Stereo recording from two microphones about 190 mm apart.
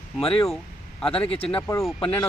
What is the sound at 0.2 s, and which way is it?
Speech, 30° left (ahead or behind).